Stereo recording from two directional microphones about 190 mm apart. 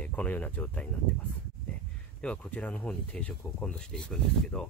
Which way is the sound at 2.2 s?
5° left (ahead or behind).